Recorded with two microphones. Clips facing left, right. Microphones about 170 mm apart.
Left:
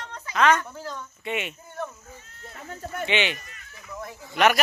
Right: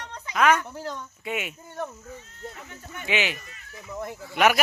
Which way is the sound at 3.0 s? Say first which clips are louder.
Left 1 dB; 5° right (ahead or behind).